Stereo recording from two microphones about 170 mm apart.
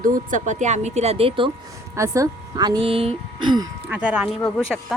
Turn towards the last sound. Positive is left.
turn(degrees=5)  # may be behind; listen again after turning